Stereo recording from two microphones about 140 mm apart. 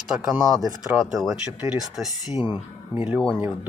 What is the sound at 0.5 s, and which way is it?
Speech, 25° right (ahead or behind).